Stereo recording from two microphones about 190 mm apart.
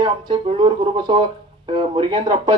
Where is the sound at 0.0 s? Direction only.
25° right (ahead or behind).